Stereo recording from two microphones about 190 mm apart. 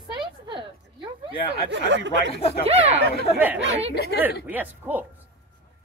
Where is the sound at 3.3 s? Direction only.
10° right (ahead or behind).